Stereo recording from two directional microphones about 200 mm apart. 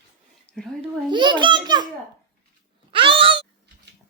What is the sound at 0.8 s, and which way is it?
A child's voice, 25° right (ahead or behind).